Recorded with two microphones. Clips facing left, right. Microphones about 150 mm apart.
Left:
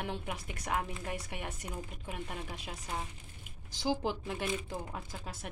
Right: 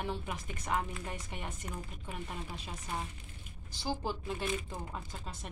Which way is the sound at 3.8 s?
15° left (ahead or behind).